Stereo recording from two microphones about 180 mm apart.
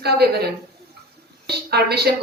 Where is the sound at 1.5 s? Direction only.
65° right (ahead or behind).